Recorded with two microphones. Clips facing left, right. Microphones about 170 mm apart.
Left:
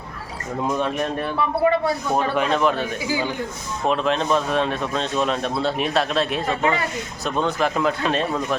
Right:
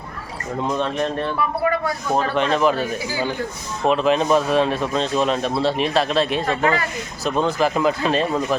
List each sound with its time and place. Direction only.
0.7 s speech: 10° left (ahead or behind)
1.6 s a man's voice: 25° left (ahead or behind)
2.3 s speech: 5° left (ahead or behind)